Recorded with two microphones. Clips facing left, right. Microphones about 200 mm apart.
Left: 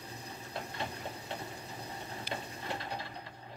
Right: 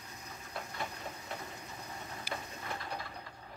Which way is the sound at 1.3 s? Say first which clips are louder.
Left 2 dB; 30° left (ahead or behind).